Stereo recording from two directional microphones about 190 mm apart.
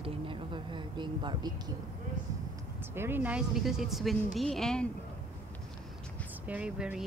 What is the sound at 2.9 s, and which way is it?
Speech, 10° right (ahead or behind).